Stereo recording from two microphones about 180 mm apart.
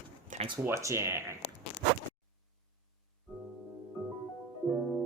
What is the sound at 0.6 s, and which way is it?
Speech, 15° right (ahead or behind).